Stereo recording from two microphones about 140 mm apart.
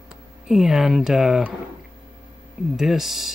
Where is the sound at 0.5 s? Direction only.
Centre (ahead or behind).